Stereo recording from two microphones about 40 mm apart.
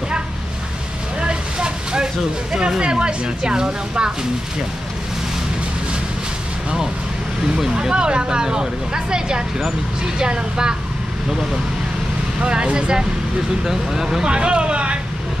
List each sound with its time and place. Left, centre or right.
1.2 s vehicle: right
2.5 s speech: centre
7.9 s speech: right
12.4 s speech: right